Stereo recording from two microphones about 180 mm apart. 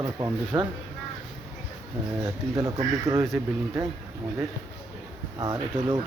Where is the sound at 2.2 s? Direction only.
20° right (ahead or behind).